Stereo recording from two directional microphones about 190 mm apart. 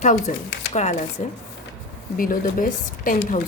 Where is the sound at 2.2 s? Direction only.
45° left (ahead or behind).